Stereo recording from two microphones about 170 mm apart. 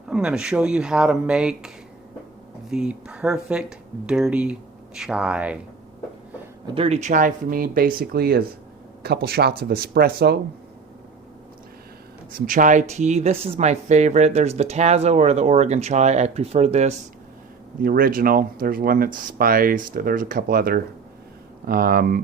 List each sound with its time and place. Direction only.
0.1 s speech: 5° right (ahead or behind)
6.7 s speech: 40° right (ahead or behind); by 10.3 s 65° right (ahead or behind)
12.5 s speech: 50° right (ahead or behind)
17.7 s speech: 55° right (ahead or behind)